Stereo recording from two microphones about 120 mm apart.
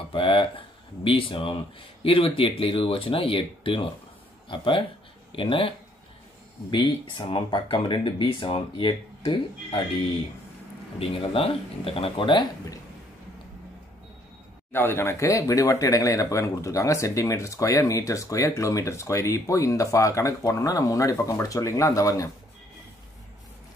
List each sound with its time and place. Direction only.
0.1 s speech: 45° left (ahead or behind)
11.0 s speech: 50° left (ahead or behind)
14.7 s speech: 20° left (ahead or behind)